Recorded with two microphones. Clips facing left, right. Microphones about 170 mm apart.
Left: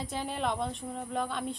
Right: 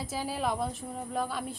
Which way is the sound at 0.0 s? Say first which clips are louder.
Right 1 dB; 5° right (ahead or behind).